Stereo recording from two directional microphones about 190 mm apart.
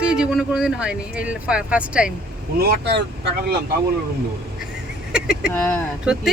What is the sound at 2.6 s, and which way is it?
Speech, 55° right (ahead or behind).